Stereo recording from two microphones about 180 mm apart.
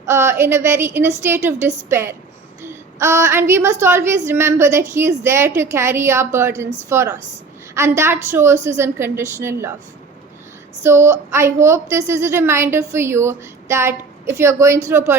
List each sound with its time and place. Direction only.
0.0 s a woman's voice: 15° right (ahead or behind)
10.8 s a woman's voice: 15° right (ahead or behind)